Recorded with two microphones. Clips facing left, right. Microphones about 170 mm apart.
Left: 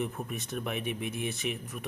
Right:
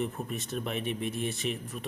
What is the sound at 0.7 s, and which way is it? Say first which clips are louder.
Speech: right 2 dB; 15° left (ahead or behind).